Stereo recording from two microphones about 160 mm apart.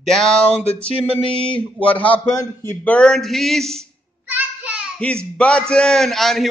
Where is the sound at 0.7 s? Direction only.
35° left (ahead or behind).